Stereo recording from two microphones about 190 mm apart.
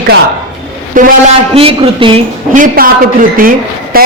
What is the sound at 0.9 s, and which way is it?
Speech, 45° right (ahead or behind).